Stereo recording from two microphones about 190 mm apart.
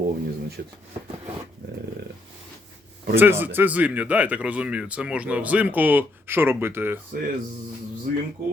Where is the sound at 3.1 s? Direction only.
10° right (ahead or behind).